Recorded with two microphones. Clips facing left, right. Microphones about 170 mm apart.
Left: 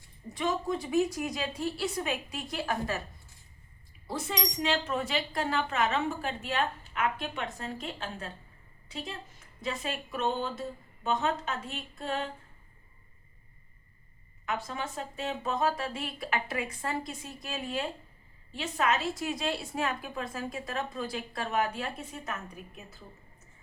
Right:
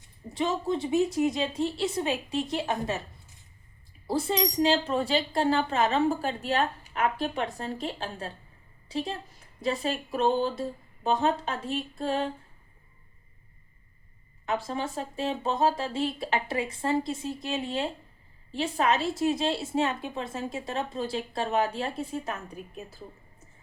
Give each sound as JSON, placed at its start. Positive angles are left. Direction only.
{"t": 0.0, "sound": "a woman's voice", "side_deg": -25}
{"t": 9.6, "sound": "speech", "side_deg": -35}
{"t": 14.4, "sound": "a woman's voice", "side_deg": -30}